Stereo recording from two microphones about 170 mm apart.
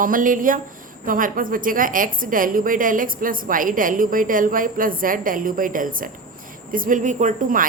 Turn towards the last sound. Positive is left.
turn(degrees=-50)  # may be behind; listen again after turning